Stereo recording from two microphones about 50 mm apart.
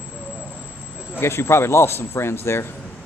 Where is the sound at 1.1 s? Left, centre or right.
Left.